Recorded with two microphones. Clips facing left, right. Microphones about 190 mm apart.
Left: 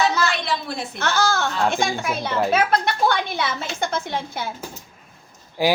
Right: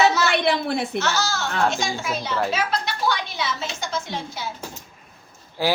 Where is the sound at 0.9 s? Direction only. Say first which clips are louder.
Left 2 dB; 55° left (ahead or behind).